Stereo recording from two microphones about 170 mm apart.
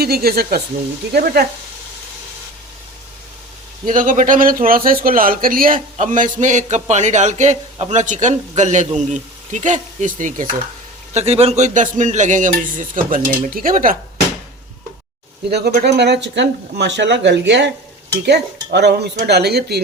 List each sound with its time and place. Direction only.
0.0 s speech: 65° right (ahead or behind)
3.8 s speech: 50° right (ahead or behind)
11.1 s speech: 35° right (ahead or behind); by 13.9 s 55° right (ahead or behind)
15.4 s speech: 70° right (ahead or behind); by 17.7 s 90° right
18.3 s dishes: 80° right
19.2 s speech: 75° right (ahead or behind)